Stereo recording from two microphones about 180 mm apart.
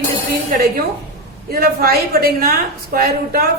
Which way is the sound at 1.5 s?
55° right (ahead or behind).